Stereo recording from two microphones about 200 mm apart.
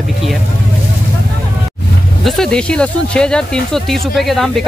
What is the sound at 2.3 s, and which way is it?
Speech, centre (ahead or behind).